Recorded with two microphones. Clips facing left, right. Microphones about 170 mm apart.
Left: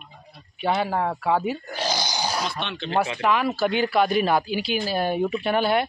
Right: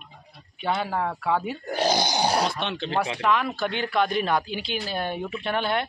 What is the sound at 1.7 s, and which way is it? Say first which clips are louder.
Speech: right 4 dB; 55° right (ahead or behind).